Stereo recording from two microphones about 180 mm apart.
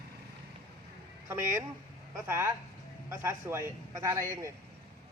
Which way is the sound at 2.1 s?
15° right (ahead or behind).